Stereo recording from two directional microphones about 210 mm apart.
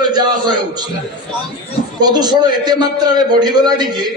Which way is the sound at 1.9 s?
20° right (ahead or behind).